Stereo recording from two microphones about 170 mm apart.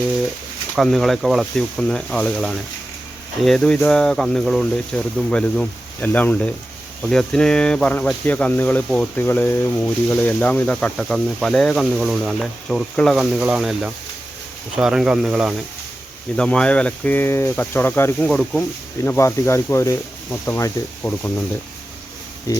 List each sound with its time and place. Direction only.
0.8 s speech: centre (ahead or behind)
16.3 s speech: 5° left (ahead or behind)
19.0 s speech: 15° left (ahead or behind)